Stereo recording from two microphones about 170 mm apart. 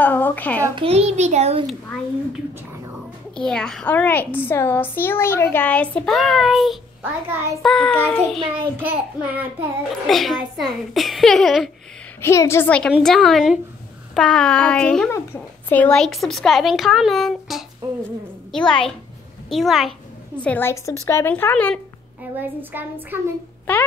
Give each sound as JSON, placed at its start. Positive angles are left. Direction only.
{"t": 0.0, "sound": "a child's voice", "side_deg": 10}
{"t": 0.7, "sound": "a child's voice", "side_deg": -35}
{"t": 3.3, "sound": "a child's voice", "side_deg": 5}
{"t": 8.8, "sound": "a child's voice", "side_deg": -10}
{"t": 10.0, "sound": "speech", "side_deg": 0}
{"t": 12.2, "sound": "a child's voice", "side_deg": 15}
{"t": 18.7, "sound": "speech", "side_deg": 5}
{"t": 20.4, "sound": "a child's voice", "side_deg": 10}
{"t": 22.4, "sound": "a child's voice", "side_deg": -10}
{"t": 23.7, "sound": "a child's voice", "side_deg": 10}